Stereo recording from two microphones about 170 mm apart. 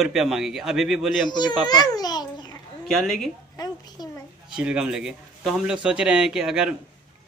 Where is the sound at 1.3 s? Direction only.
25° left (ahead or behind).